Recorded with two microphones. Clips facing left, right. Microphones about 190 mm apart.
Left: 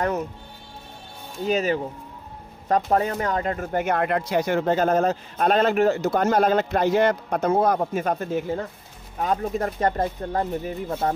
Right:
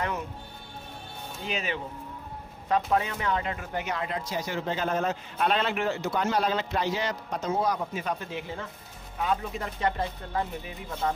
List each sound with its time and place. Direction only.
1.4 s speech: 40° left (ahead or behind)